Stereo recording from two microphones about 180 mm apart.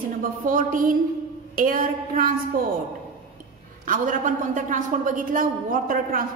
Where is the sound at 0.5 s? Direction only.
50° right (ahead or behind).